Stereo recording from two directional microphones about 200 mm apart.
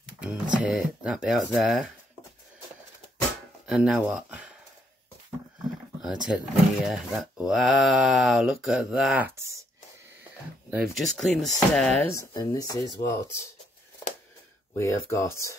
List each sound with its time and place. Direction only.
0.2 s speech: 5° right (ahead or behind)
3.6 s speech: 5° right (ahead or behind)
6.2 s speech: 5° right (ahead or behind)
10.7 s speech: centre (ahead or behind)
12.4 s speech: 20° left (ahead or behind)
14.8 s speech: 15° left (ahead or behind)